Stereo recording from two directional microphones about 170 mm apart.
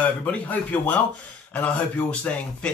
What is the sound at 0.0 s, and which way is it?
Speech, 10° left (ahead or behind).